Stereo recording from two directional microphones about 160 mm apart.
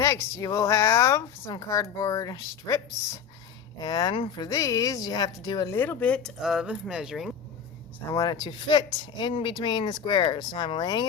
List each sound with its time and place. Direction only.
0.0 s speech: 20° left (ahead or behind)
5.7 s speech: 10° left (ahead or behind)
8.1 s speech: 25° left (ahead or behind)